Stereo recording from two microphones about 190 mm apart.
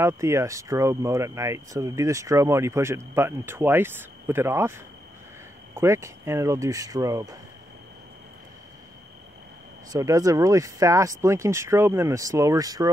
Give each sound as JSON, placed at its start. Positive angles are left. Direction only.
{"t": 0.0, "sound": "speech", "side_deg": -15}
{"t": 9.9, "sound": "speech", "side_deg": -15}